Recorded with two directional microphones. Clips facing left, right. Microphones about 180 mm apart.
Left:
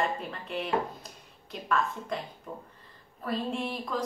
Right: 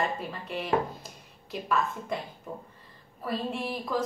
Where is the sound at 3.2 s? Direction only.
5° right (ahead or behind).